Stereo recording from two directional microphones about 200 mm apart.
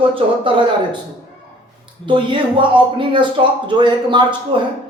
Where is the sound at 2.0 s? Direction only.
25° right (ahead or behind).